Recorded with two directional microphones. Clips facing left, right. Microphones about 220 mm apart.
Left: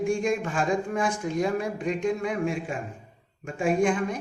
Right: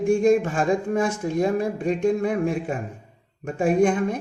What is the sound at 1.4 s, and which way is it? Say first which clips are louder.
Speech: right 5 dB; 30° right (ahead or behind).